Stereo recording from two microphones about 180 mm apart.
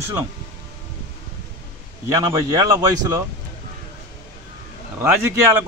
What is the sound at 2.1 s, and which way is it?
Speech, 20° right (ahead or behind).